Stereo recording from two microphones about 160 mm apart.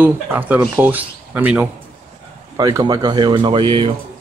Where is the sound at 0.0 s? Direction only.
10° right (ahead or behind).